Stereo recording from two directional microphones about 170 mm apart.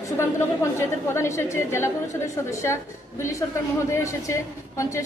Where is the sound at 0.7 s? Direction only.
15° left (ahead or behind).